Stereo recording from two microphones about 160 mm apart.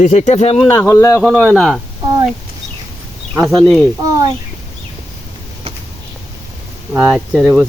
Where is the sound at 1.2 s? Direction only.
Centre (ahead or behind).